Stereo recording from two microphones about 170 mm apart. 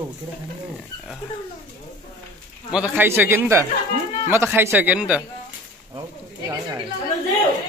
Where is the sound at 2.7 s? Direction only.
10° right (ahead or behind).